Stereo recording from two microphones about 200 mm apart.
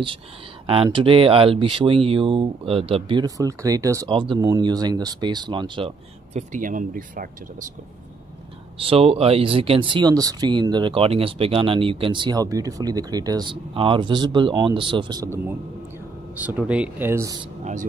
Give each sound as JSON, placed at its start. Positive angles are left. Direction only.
{"t": 0.9, "sound": "speech", "side_deg": -25}
{"t": 6.5, "sound": "speech", "side_deg": -40}
{"t": 8.8, "sound": "speech", "side_deg": -30}